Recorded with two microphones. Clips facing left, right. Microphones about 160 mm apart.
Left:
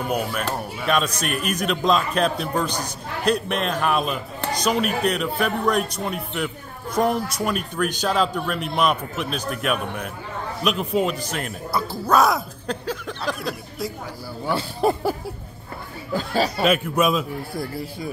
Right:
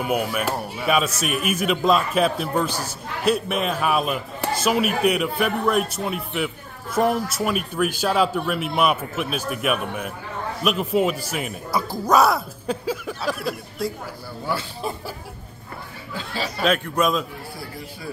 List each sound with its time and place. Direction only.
0.0 s speech: 10° right (ahead or behind)
14.8 s speech: 60° left (ahead or behind)
16.6 s a man's voice: 5° left (ahead or behind)